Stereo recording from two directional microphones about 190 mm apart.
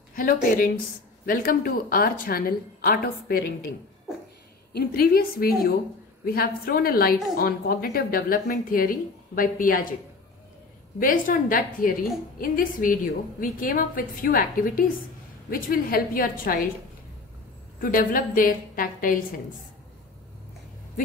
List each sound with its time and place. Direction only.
0.1 s speech: 50° left (ahead or behind)
4.7 s speech: 50° left (ahead or behind)
11.0 s speech: 45° left (ahead or behind)
17.7 s speech: 45° left (ahead or behind)